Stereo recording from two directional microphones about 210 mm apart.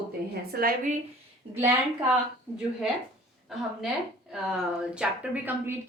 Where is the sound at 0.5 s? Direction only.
45° right (ahead or behind).